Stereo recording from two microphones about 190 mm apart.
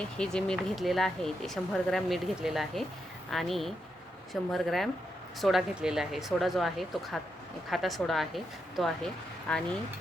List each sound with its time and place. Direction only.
0.2 s speech: 5° left (ahead or behind)